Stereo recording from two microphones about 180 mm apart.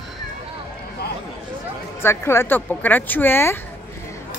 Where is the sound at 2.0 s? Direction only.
15° left (ahead or behind).